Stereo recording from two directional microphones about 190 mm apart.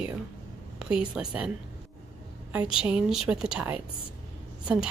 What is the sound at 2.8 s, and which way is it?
Speech, 5° right (ahead or behind).